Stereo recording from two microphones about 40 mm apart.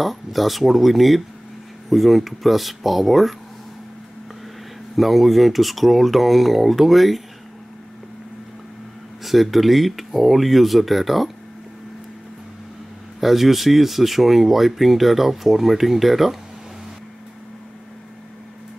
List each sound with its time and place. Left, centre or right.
0.0 s speech: centre
4.9 s speech: centre
9.2 s speech: centre
13.2 s speech: centre